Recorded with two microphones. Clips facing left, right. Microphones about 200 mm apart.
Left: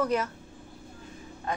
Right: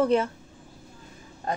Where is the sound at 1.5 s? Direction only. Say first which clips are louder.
Right 3 dB; 35° right (ahead or behind).